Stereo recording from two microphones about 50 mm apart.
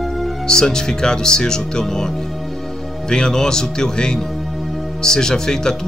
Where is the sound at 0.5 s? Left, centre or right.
Centre.